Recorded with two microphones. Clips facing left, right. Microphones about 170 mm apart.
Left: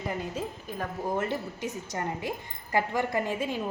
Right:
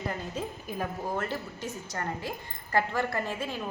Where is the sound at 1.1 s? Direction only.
20° left (ahead or behind).